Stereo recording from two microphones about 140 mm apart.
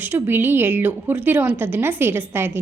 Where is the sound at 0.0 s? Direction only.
15° right (ahead or behind).